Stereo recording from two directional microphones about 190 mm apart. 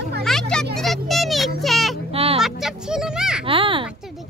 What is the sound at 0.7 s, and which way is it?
Children playing, centre (ahead or behind).